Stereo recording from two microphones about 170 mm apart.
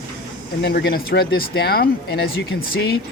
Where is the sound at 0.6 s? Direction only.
70° left (ahead or behind).